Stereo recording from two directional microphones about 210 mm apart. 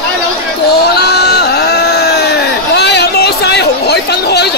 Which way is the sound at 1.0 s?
50° left (ahead or behind).